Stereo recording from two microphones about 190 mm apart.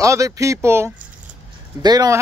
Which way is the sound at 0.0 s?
15° right (ahead or behind).